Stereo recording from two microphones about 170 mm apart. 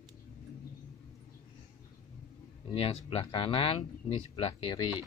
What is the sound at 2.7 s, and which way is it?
Speech, 35° left (ahead or behind).